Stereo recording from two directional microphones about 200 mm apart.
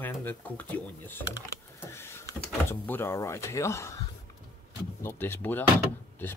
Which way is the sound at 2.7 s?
10° left (ahead or behind).